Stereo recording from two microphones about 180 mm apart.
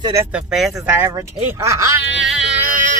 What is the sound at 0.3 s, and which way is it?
Speech, 5° right (ahead or behind).